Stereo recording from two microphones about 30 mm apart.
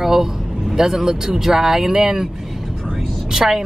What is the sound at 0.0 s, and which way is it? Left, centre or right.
Vehicle, centre.